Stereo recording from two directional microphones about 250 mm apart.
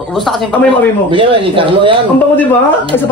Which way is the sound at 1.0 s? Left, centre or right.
Right.